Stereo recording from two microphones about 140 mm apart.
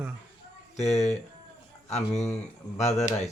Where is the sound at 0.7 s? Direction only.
55° left (ahead or behind).